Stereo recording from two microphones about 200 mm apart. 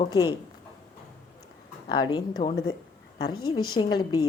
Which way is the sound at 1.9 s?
20° left (ahead or behind).